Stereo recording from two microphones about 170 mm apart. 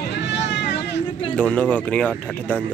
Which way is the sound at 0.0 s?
80° left.